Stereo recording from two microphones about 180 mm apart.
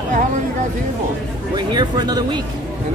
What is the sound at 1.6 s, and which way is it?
Speech, 25° right (ahead or behind).